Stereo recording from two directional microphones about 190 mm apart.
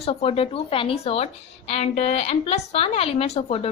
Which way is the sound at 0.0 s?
30° left (ahead or behind).